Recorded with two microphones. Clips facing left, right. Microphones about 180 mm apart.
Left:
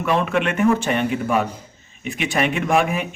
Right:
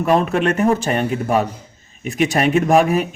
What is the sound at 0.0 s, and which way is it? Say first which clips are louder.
Speech: right 4 dB; 40° right (ahead or behind).